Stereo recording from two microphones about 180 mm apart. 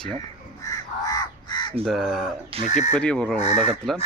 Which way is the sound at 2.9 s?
5° left (ahead or behind).